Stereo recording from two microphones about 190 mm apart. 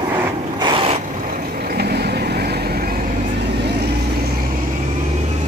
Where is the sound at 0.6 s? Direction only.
25° right (ahead or behind).